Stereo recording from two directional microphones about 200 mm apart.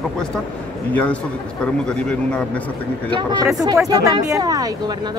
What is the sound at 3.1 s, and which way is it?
Speech, 20° right (ahead or behind).